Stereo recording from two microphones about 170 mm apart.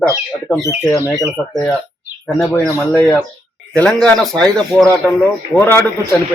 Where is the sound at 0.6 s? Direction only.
15° left (ahead or behind).